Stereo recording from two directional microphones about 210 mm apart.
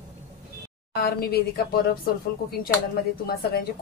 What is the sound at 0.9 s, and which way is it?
A woman's voice, 45° left (ahead or behind).